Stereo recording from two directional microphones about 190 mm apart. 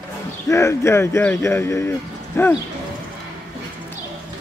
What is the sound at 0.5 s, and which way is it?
A man's voice, 15° left (ahead or behind).